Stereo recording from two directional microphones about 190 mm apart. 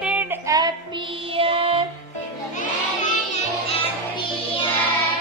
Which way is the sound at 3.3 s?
30° left (ahead or behind).